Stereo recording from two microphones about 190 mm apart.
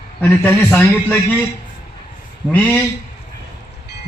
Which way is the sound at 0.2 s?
10° left (ahead or behind).